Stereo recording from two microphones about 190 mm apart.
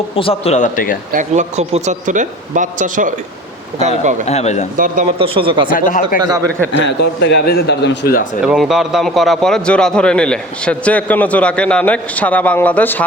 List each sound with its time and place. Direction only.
0.2 s a man's voice: 30° left (ahead or behind)
1.1 s speech: 40° right (ahead or behind)
4.3 s a man's voice: 35° left (ahead or behind)
5.2 s speech: 30° right (ahead or behind)
5.7 s speech: 45° left (ahead or behind)
6.2 s speech: 20° right (ahead or behind)
6.8 s speech: 65° left (ahead or behind)
8.4 s a man's voice: centre (ahead or behind)